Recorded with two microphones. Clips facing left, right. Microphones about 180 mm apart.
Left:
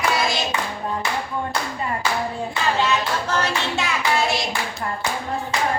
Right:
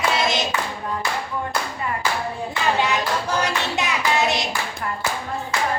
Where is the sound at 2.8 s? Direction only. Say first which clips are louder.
Even; 15° right (ahead or behind).